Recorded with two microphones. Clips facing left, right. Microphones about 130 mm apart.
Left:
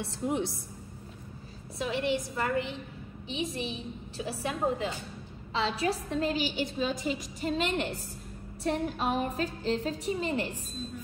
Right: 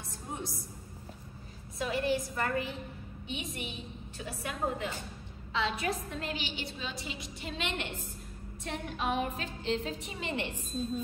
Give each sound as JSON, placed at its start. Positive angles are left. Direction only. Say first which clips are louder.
{"t": 0.0, "sound": "a woman's voice", "louder": "left 10 dB", "side_deg": 70}
{"t": 1.9, "sound": "a woman's voice", "louder": "left 1 dB", "side_deg": 25}